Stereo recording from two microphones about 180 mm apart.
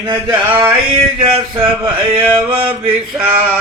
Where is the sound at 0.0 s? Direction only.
20° right (ahead or behind).